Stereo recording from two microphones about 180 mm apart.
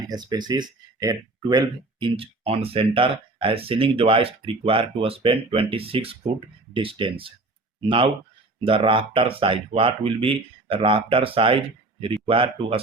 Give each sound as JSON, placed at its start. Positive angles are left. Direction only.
{"t": 0.1, "sound": "speech", "side_deg": -20}